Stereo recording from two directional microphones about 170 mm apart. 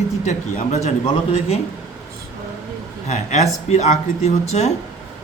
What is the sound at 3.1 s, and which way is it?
Speech, 40° left (ahead or behind).